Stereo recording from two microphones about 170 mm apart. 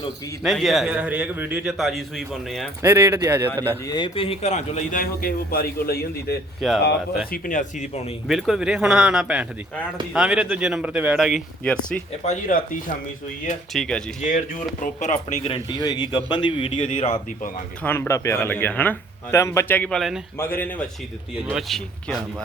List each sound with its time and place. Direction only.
0.4 s a man's voice: centre (ahead or behind)
2.8 s speech: 15° right (ahead or behind)
3.8 s a man's voice: 25° left (ahead or behind); by 6.3 s 65° left (ahead or behind)
7.3 s a man's voice: 50° left (ahead or behind)
8.3 s a man's voice: centre (ahead or behind)
12.2 s a man's voice: 45° left (ahead or behind)
13.7 s a man's voice: 5° left (ahead or behind)
14.2 s speech: 50° left (ahead or behind)
17.8 s speech: 10° left (ahead or behind)
20.4 s speech: 10° left (ahead or behind)
21.5 s a man's voice: centre (ahead or behind)